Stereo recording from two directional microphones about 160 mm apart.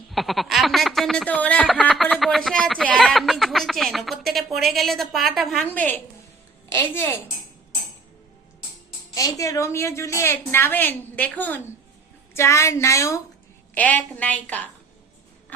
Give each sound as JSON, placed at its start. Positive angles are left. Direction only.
{"t": 0.1, "sound": "a sound", "side_deg": 0}
{"t": 5.7, "sound": "a woman's voice", "side_deg": 10}
{"t": 9.1, "sound": "a woman's voice", "side_deg": 20}